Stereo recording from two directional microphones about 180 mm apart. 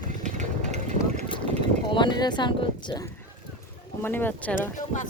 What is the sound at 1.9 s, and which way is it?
Speech, 25° left (ahead or behind).